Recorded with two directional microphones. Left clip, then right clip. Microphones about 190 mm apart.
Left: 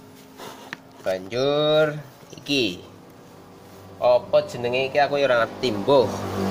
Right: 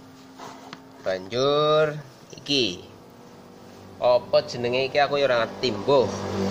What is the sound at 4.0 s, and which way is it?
Speech, 10° right (ahead or behind).